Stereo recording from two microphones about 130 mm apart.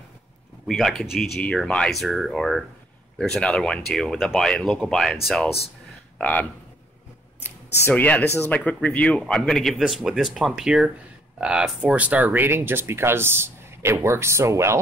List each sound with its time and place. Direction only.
0.7 s speech: 5° left (ahead or behind)
7.4 s speech: 15° left (ahead or behind); by 14.8 s 20° right (ahead or behind)